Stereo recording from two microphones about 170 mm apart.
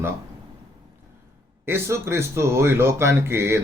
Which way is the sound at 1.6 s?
15° right (ahead or behind).